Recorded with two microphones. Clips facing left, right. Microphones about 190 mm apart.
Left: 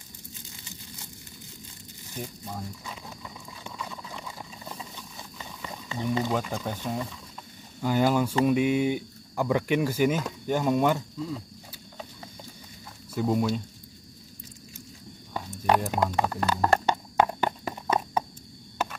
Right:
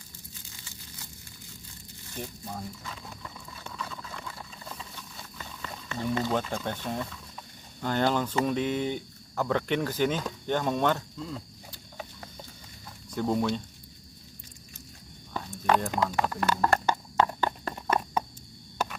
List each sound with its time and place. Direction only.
2.0 s wild animals: 15° left (ahead or behind)
5.4 s a sound: 15° left (ahead or behind)
6.5 s speech: 5° left (ahead or behind)
13.1 s speech: 5° left (ahead or behind)
15.5 s speech: 15° left (ahead or behind)
16.2 s clip-clop: 25° left (ahead or behind)